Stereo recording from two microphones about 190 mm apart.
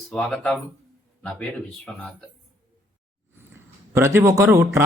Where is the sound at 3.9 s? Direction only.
15° right (ahead or behind).